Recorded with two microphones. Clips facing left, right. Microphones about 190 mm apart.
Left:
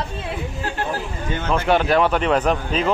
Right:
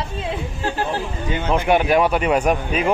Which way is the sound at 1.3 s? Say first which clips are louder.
Right 1 dB; 15° right (ahead or behind).